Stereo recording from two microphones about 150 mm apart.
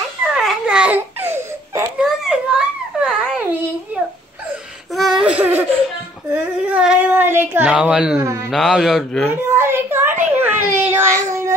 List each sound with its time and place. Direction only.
0.3 s baby cry: 5° right (ahead or behind)
2.0 s babbling: 5° right (ahead or behind)
4.9 s a sound: centre (ahead or behind)
6.7 s baby cry: 5° right (ahead or behind)
8.2 s a man's voice: 20° right (ahead or behind)
8.5 s a man's voice: centre (ahead or behind)
9.5 s child singing: 15° right (ahead or behind)